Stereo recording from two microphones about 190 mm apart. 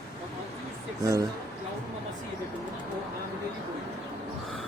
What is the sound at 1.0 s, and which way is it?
Speech, 15° right (ahead or behind).